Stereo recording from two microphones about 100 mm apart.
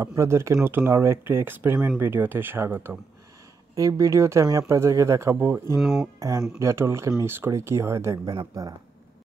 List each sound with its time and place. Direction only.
0.0 s speech: 30° right (ahead or behind)
3.7 s speech: 35° right (ahead or behind)
5.8 s speech: 5° right (ahead or behind)
6.1 s speech: 30° right (ahead or behind)